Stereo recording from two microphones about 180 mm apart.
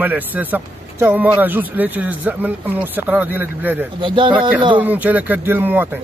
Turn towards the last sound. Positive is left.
turn(degrees=-10)  # may be behind; listen again after turning